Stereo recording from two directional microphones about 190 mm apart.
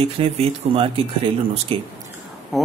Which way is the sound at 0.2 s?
30° right (ahead or behind).